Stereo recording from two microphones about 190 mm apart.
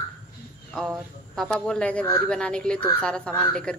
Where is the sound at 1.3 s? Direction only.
5° left (ahead or behind).